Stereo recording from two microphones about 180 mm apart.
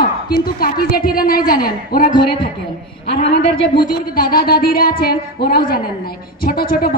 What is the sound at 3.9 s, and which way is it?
A woman's voice, 55° left (ahead or behind).